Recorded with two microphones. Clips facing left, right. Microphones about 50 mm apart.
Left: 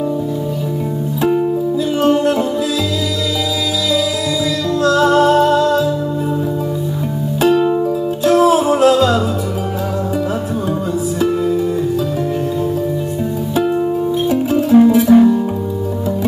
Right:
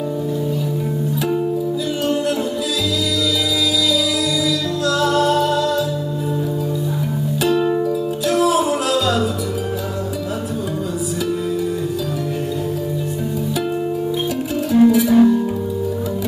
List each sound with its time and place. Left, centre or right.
4.8 s music: left
7.4 s music: left
14.3 s music: left
15.1 s music: centre